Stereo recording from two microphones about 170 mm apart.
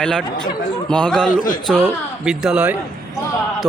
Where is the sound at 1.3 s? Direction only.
55° left (ahead or behind).